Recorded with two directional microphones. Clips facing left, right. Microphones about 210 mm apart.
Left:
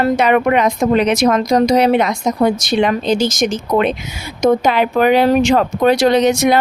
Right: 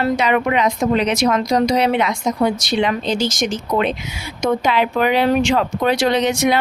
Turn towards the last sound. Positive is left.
turn(degrees=40)  # may be behind; listen again after turning